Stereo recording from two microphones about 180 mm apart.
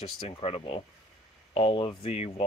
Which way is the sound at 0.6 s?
30° left (ahead or behind).